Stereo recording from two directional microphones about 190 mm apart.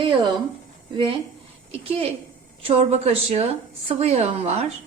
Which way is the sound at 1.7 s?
30° right (ahead or behind).